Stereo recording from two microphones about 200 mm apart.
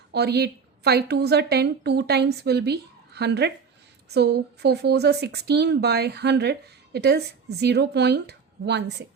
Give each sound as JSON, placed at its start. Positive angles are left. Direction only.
{"t": 0.1, "sound": "a woman's voice", "side_deg": -55}